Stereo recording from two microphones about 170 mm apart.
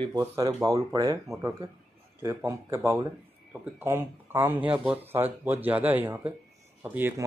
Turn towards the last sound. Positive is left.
turn(degrees=-10)  # may be behind; listen again after turning